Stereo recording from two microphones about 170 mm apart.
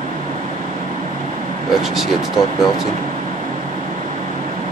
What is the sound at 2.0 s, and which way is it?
Speech, centre (ahead or behind).